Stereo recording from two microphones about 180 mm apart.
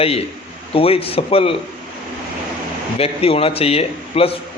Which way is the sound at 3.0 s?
30° left (ahead or behind).